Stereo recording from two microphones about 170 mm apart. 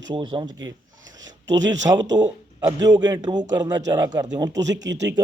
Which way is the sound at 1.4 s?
90° right.